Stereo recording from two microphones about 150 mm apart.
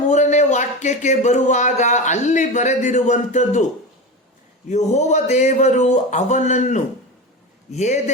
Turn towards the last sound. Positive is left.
turn(degrees=50)  # may be behind; listen again after turning